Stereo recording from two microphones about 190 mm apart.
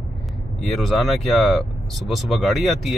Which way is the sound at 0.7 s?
Centre (ahead or behind).